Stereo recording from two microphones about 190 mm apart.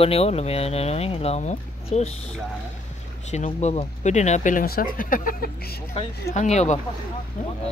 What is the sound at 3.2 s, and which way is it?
Speech, 35° left (ahead or behind).